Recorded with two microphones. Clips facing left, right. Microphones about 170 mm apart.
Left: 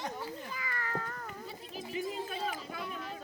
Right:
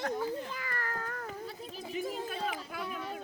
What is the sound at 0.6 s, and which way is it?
Cat, 50° right (ahead or behind).